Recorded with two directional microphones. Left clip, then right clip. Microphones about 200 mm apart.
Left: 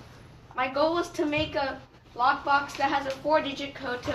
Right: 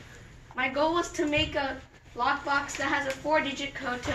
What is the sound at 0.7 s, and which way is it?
Speech, 10° right (ahead or behind).